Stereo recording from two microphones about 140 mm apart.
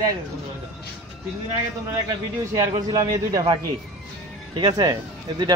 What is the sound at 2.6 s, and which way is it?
A man's voice, 25° right (ahead or behind).